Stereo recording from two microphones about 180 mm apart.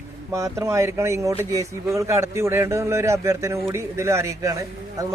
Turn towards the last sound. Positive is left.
turn(degrees=-15)  # may be behind; listen again after turning